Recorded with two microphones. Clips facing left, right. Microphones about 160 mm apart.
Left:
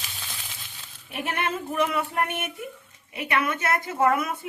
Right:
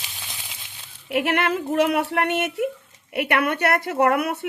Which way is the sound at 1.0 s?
85° right.